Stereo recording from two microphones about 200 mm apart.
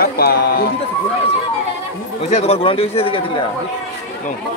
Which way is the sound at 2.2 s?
30° left (ahead or behind).